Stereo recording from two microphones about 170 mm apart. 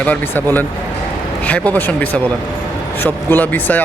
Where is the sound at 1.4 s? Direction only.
10° left (ahead or behind).